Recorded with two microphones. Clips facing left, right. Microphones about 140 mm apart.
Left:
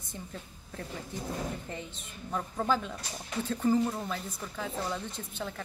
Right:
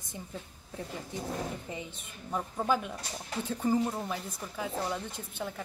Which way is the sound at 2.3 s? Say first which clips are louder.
Even; 10° right (ahead or behind).